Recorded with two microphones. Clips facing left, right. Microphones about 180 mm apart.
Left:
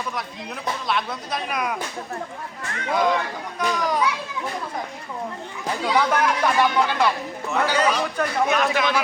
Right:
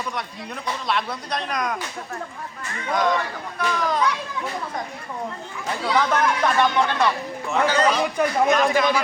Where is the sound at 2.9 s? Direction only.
10° left (ahead or behind).